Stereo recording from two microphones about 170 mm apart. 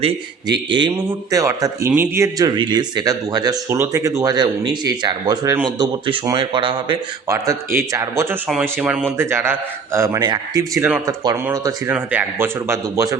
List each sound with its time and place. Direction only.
0.0 s a man's voice: 25° right (ahead or behind)
2.6 s a man's voice: 25° right (ahead or behind)